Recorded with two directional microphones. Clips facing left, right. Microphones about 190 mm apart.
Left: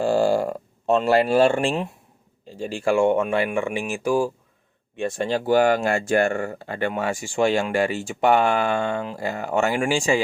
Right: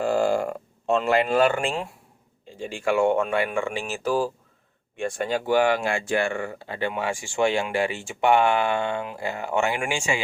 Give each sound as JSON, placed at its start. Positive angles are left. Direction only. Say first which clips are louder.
{"t": 0.0, "sound": "a sound", "louder": "left 3 dB", "side_deg": 30}
{"t": 2.6, "sound": "speech", "louder": "left 2 dB", "side_deg": 35}
{"t": 4.9, "sound": "speech", "louder": "left 2 dB", "side_deg": 25}
{"t": 5.5, "sound": "speech", "louder": "left 3 dB", "side_deg": 40}